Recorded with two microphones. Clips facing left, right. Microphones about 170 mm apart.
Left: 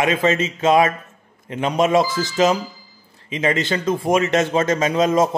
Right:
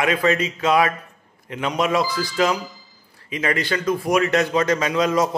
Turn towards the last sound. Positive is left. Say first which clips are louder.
# left 3 dB
turn(degrees=25)  # may be behind; listen again after turning